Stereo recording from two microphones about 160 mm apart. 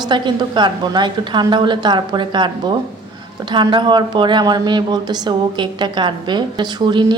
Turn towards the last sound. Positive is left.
turn(degrees=-30)  # may be behind; listen again after turning